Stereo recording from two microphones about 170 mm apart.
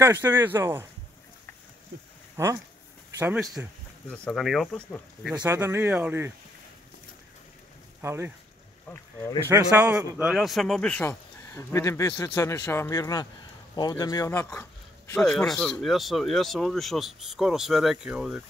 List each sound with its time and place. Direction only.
0.0 s speech: 15° right (ahead or behind)
1.9 s speech: 90° right
2.3 s speech: 15° right (ahead or behind)
3.3 s speech: centre (ahead or behind)
5.4 s speech: 10° right (ahead or behind)
8.0 s speech: 15° right (ahead or behind)
9.5 s a man's voice: 15° right (ahead or behind); by 14.7 s 15° left (ahead or behind)
15.2 s speech: centre (ahead or behind)